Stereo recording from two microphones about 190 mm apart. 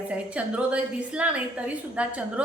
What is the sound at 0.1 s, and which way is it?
A woman's voice, 5° right (ahead or behind).